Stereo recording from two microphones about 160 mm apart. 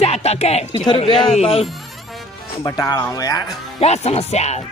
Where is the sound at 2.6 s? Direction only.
25° left (ahead or behind).